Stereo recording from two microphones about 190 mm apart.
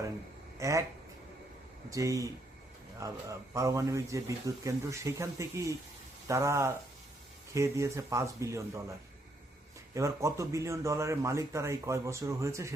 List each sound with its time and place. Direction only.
0.6 s a man's voice: 15° right (ahead or behind)
1.9 s a man's voice: 15° right (ahead or behind)
9.9 s a man's voice: 15° right (ahead or behind)